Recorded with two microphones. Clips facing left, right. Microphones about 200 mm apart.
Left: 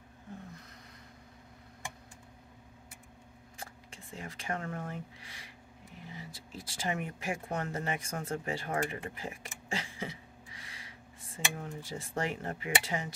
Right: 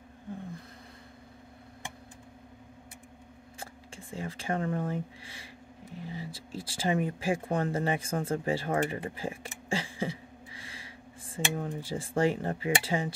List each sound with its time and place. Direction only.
3.5 s speech: 30° right (ahead or behind)